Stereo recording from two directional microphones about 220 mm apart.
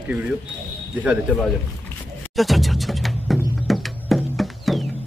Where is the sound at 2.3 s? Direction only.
Centre (ahead or behind).